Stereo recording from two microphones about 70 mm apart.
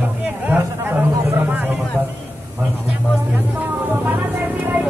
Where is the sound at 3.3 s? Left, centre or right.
Right.